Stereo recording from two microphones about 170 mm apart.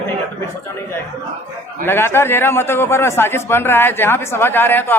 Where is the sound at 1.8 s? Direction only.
15° left (ahead or behind).